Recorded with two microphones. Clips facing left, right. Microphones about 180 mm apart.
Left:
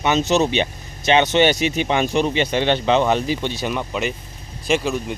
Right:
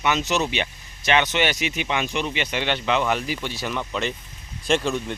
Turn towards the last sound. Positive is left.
turn(degrees=5)  # may be behind; listen again after turning